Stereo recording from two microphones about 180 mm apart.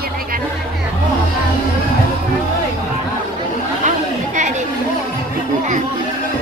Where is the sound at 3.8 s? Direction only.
40° right (ahead or behind).